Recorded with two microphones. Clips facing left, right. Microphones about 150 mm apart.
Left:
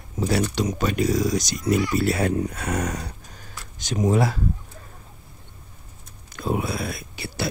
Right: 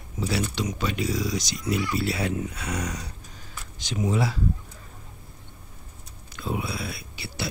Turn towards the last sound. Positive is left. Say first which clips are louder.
# left 5 dB
turn(degrees=45)  # may be behind; listen again after turning